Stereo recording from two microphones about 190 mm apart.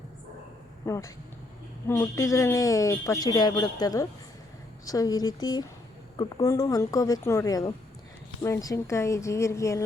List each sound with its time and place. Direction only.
0.9 s speech: 15° left (ahead or behind)